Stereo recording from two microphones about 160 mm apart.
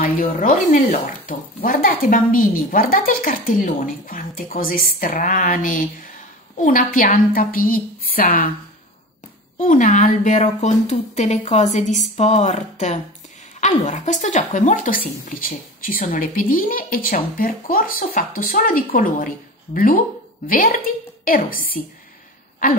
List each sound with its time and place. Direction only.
0.0 s speech: 55° left (ahead or behind)
9.6 s a woman's voice: 55° left (ahead or behind)